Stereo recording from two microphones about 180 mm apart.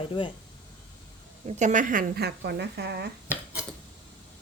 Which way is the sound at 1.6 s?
45° right (ahead or behind).